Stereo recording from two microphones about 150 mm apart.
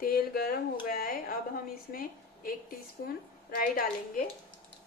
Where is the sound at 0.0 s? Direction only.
90° left; by 2.5 s 70° left (ahead or behind).